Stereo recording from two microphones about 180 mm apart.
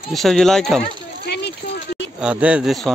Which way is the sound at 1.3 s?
65° left (ahead or behind).